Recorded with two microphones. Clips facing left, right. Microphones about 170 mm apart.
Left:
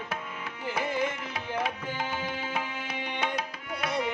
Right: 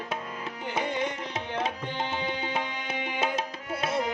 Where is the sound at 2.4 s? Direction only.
30° right (ahead or behind).